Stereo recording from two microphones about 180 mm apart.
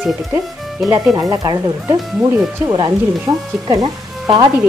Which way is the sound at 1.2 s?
20° right (ahead or behind).